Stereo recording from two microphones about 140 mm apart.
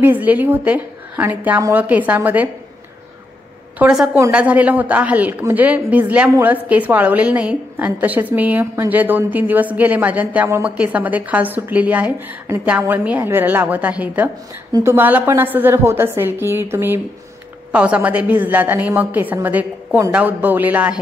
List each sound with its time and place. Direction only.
0.0 s a woman's voice: 10° right (ahead or behind)
3.7 s a woman's voice: 5° right (ahead or behind)